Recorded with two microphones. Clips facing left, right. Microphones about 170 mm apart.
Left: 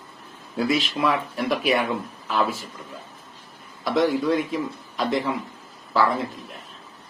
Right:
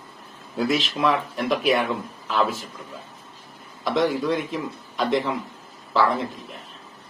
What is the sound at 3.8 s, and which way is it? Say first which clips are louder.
Speech: left 1 dB; 5° left (ahead or behind).